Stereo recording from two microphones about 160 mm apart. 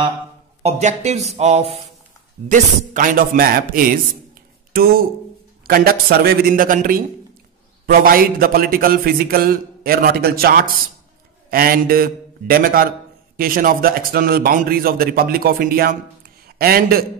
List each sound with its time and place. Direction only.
0.6 s a man's voice: 40° right (ahead or behind)
2.4 s a man's voice: 55° right (ahead or behind)
5.7 s a man's voice: 70° right (ahead or behind)